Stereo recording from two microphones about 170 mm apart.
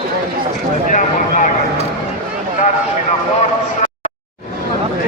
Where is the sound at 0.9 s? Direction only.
50° left (ahead or behind).